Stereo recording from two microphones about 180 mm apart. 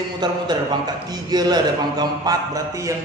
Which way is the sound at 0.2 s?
25° right (ahead or behind).